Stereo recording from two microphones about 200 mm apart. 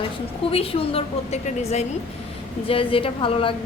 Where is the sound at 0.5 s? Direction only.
30° left (ahead or behind).